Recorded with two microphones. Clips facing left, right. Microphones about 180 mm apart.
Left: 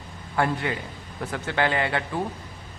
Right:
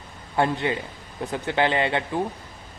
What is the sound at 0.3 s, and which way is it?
Speech, 20° right (ahead or behind).